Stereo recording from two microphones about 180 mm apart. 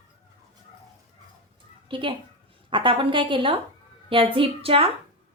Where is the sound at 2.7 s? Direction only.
30° right (ahead or behind).